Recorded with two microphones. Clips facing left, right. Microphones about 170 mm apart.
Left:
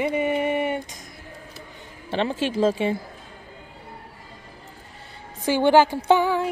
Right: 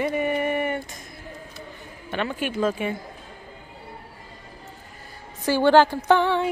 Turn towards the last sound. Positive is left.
turn(degrees=5)  # may be behind; listen again after turning